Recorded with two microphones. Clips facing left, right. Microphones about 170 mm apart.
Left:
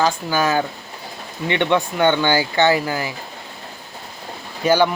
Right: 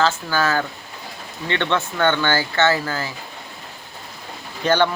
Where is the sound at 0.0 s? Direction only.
15° left (ahead or behind).